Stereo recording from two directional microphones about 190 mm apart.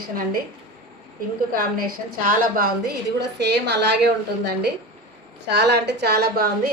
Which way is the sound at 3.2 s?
60° right (ahead or behind).